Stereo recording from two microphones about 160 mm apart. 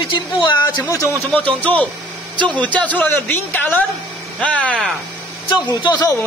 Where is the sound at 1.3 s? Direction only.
10° left (ahead or behind).